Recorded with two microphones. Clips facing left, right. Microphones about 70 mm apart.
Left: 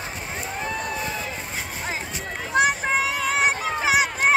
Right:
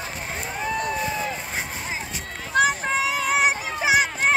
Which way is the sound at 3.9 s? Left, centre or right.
Centre.